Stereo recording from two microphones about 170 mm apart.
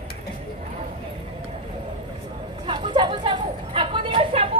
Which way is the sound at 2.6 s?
30° right (ahead or behind).